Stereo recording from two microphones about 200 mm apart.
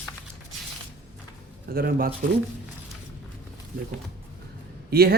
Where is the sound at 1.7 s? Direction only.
50° right (ahead or behind).